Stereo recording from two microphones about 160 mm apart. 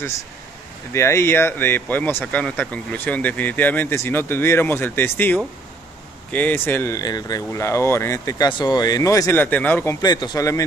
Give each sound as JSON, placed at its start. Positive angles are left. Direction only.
{"t": 0.9, "sound": "speech", "side_deg": 15}
{"t": 10.0, "sound": "speech", "side_deg": 25}